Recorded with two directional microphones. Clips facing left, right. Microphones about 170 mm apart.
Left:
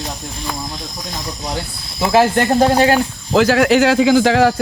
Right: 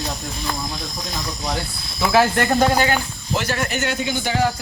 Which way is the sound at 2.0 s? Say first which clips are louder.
Left 4 dB; 25° left (ahead or behind).